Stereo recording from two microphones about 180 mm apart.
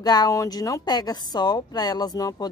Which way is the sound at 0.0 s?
20° left (ahead or behind).